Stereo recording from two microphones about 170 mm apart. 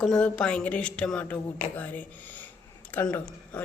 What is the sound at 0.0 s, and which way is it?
Speech, 5° left (ahead or behind).